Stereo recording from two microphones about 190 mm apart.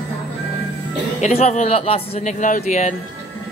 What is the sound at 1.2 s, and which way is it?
Speech, 35° left (ahead or behind).